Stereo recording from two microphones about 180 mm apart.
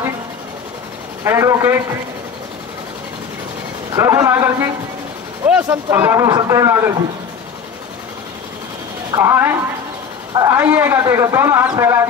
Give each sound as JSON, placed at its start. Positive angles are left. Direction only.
{"t": 1.2, "sound": "a man's voice", "side_deg": -15}
{"t": 3.9, "sound": "a man's voice", "side_deg": -15}
{"t": 9.1, "sound": "a man's voice", "side_deg": -15}